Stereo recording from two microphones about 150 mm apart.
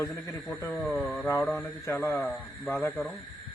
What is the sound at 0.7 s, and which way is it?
Speech, centre (ahead or behind).